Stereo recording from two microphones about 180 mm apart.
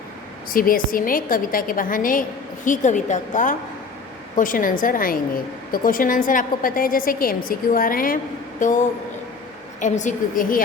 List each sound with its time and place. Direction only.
0.5 s a woman's voice: 50° left (ahead or behind)
9.8 s a woman's voice: 45° left (ahead or behind)